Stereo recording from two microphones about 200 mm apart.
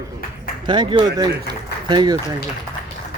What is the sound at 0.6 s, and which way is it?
Speech, 25° right (ahead or behind).